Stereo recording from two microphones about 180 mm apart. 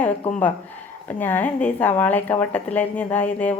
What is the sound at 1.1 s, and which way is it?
A woman's voice, 10° left (ahead or behind).